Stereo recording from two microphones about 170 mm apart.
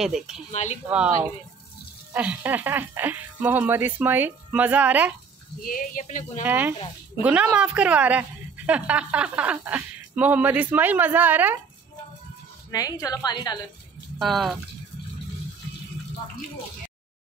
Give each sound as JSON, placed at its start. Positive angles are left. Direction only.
{"t": 0.0, "sound": "speech", "side_deg": 0}
{"t": 0.5, "sound": "speech", "side_deg": 40}
{"t": 0.8, "sound": "speech", "side_deg": -10}
{"t": 5.7, "sound": "speech", "side_deg": 50}
{"t": 6.4, "sound": "speech", "side_deg": -10}
{"t": 12.7, "sound": "a woman's voice", "side_deg": 20}
{"t": 14.2, "sound": "speech", "side_deg": 0}